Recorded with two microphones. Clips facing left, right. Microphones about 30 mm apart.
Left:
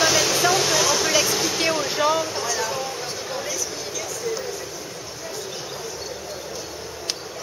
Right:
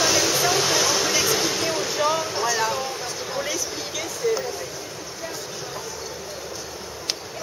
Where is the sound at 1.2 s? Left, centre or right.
Centre.